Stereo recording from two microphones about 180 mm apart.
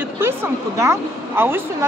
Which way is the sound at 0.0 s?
15° right (ahead or behind).